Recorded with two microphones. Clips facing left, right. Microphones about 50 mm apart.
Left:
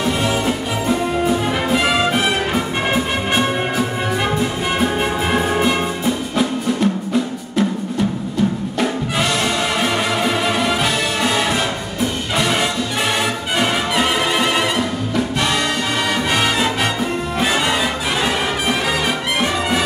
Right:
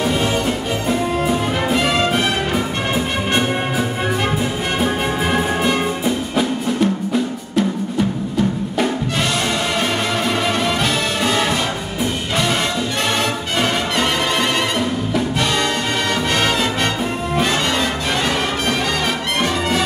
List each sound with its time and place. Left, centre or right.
0.2 s music: centre
9.8 s music: centre
13.6 s music: centre